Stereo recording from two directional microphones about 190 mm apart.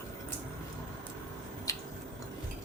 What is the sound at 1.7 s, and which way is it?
Squish, 20° left (ahead or behind).